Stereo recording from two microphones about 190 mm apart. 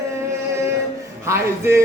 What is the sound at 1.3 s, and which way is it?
Music, 15° right (ahead or behind).